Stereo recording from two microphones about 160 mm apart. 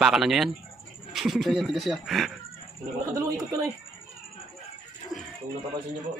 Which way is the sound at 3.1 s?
20° right (ahead or behind).